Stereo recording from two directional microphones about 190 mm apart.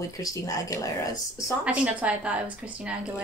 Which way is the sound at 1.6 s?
5° right (ahead or behind).